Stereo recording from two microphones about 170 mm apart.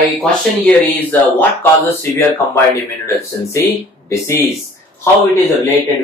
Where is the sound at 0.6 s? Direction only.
10° left (ahead or behind).